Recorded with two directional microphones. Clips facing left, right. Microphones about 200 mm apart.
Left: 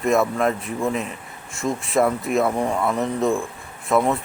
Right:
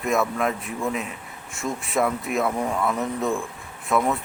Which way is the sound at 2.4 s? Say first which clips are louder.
Left 3 dB; 25° left (ahead or behind).